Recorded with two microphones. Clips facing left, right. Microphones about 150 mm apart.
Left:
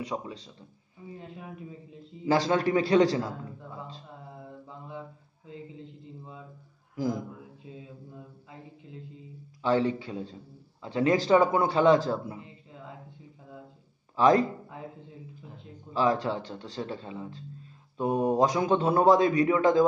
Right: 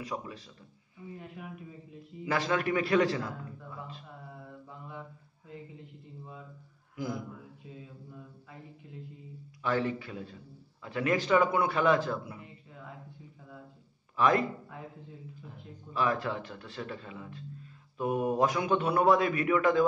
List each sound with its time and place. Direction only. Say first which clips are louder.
0.1 s a man's voice: left 3 dB; 30° left (ahead or behind)
4.6 s mantra: left 4 dB; 20° left (ahead or behind)
5.5 s a man's voice: left 3 dB; 25° left (ahead or behind)
9.6 s a man's voice: left 5 dB; 25° left (ahead or behind)
14.1 s speech: left 5 dB; 35° left (ahead or behind)
15.9 s a man's voice: left 4 dB; 25° left (ahead or behind)